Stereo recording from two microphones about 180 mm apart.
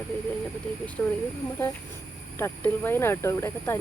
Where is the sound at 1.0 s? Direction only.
10° left (ahead or behind).